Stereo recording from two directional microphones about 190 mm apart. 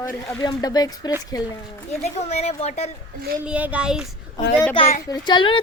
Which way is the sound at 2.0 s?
35° left (ahead or behind).